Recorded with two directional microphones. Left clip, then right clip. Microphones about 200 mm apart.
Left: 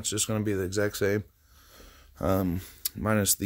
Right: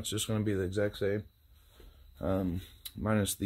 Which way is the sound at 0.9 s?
40° left (ahead or behind).